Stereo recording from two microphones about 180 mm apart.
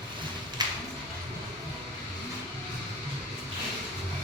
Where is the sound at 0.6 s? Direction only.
25° right (ahead or behind).